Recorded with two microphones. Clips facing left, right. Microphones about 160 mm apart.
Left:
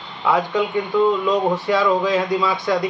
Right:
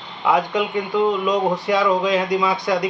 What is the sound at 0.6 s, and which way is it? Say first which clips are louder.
Speech: left 1 dB; 20° right (ahead or behind).